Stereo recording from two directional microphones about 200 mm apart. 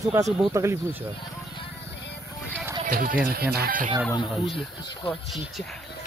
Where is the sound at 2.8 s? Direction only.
45° right (ahead or behind).